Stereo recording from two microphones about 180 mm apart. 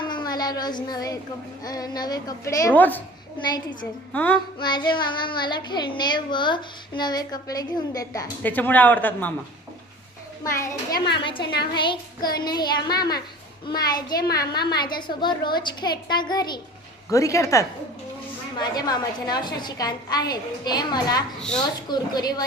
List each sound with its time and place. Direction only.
0.0 s a sound: 25° left (ahead or behind)
1.6 s child singing: 20° left (ahead or behind)
3.4 s child singing: 25° left (ahead or behind)
4.1 s speech: 10° left (ahead or behind)
4.6 s child singing: 25° left (ahead or behind)
8.4 s speech: 10° left (ahead or behind)
10.9 s a woman's voice: 70° left (ahead or behind)
11.2 s child singing: 30° left (ahead or behind)
17.1 s speech: 20° left (ahead or behind)
18.6 s child singing: 20° left (ahead or behind)